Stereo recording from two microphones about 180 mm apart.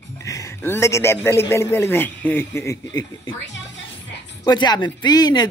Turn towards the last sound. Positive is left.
turn(degrees=20)  # may be behind; listen again after turning